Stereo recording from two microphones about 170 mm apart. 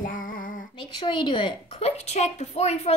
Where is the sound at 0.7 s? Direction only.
25° left (ahead or behind).